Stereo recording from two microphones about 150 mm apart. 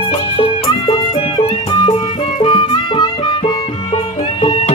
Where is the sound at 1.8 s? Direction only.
35° left (ahead or behind).